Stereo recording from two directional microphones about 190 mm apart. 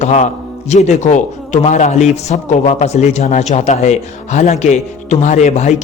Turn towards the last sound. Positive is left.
turn(degrees=35)  # may be behind; listen again after turning